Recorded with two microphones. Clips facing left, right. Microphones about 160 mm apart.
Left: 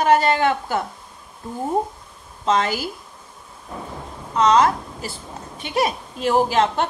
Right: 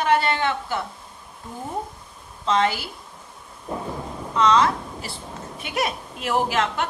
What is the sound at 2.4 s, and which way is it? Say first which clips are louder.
Speech: left 1 dB; 40° left (ahead or behind).